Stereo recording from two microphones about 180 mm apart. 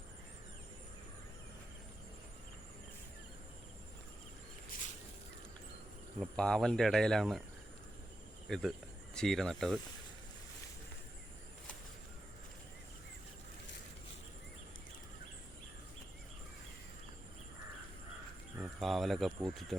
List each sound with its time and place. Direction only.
6.1 s speech: 5° left (ahead or behind)
8.4 s speech: centre (ahead or behind)
18.5 s speech: 5° right (ahead or behind)